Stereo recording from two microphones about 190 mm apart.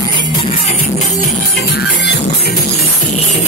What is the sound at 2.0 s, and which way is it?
Music, 60° left (ahead or behind).